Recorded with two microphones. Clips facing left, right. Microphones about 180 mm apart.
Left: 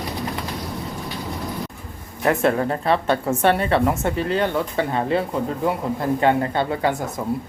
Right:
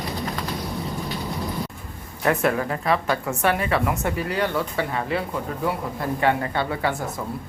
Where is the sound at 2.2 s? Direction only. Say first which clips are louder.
Left 3 dB; 30° left (ahead or behind).